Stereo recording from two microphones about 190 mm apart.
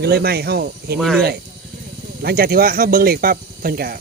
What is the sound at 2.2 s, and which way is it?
Speech, 50° right (ahead or behind).